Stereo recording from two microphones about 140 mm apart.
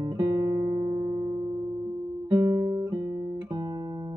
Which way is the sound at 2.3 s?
15° right (ahead or behind).